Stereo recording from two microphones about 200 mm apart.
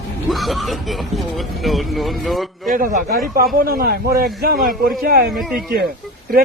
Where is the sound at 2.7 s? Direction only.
40° right (ahead or behind).